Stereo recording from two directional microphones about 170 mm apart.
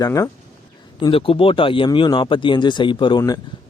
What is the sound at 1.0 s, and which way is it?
Speech, 30° left (ahead or behind).